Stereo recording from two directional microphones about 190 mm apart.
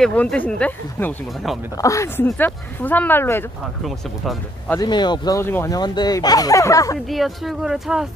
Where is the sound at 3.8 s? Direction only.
Centre (ahead or behind).